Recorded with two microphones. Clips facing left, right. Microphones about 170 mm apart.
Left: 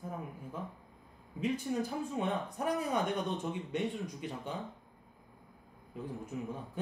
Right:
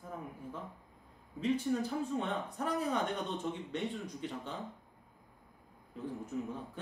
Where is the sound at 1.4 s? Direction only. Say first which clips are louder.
Right 1 dB; 15° left (ahead or behind).